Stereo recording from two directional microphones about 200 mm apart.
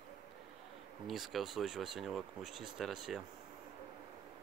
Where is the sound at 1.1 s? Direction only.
Centre (ahead or behind).